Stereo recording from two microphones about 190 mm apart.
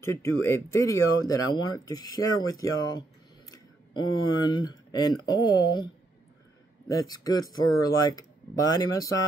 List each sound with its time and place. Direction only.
0.0 s speech: 15° left (ahead or behind)
7.1 s speech: 20° left (ahead or behind)